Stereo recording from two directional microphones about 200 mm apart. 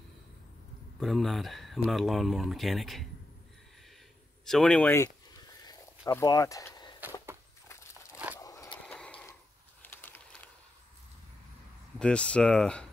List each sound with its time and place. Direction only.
0.9 s speech: centre (ahead or behind)
4.5 s speech: 5° left (ahead or behind)
5.6 s walk: 20° left (ahead or behind)
8.4 s a sound: 15° left (ahead or behind)
8.8 s a sound: 5° left (ahead or behind)
12.0 s speech: 5° left (ahead or behind)